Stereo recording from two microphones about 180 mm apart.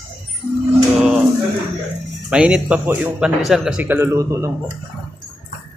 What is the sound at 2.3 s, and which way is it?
Speech, 5° right (ahead or behind).